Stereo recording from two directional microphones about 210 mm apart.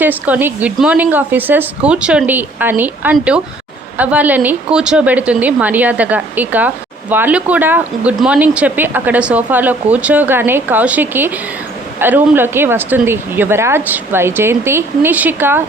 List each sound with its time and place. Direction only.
0.0 s speech: 10° right (ahead or behind)